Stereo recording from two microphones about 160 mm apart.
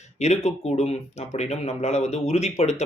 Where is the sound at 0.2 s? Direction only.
45° left (ahead or behind).